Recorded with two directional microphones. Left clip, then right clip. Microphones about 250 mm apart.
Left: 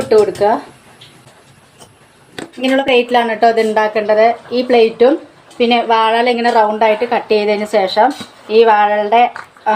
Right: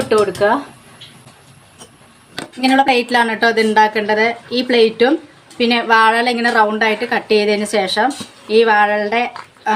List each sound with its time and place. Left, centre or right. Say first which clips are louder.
0.1 s speech: left 4 dB; centre
2.6 s a woman's voice: left 1 dB; right